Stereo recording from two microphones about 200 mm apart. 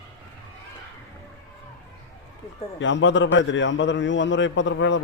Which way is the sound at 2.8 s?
70° left (ahead or behind).